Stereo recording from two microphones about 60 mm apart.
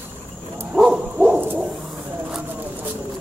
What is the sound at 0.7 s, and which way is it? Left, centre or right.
Bow-wow, centre.